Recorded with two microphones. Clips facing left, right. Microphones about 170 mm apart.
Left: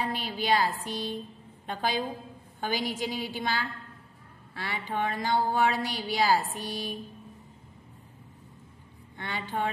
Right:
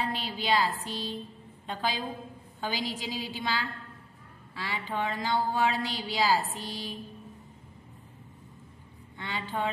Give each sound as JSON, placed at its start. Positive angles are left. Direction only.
{"t": 0.0, "sound": "a woman's voice", "side_deg": 45}
{"t": 9.1, "sound": "a woman's voice", "side_deg": 50}